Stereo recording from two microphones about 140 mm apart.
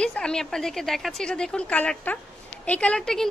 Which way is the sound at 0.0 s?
5° left (ahead or behind).